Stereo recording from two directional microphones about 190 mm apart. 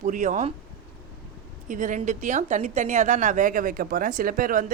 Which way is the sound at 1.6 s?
45° right (ahead or behind).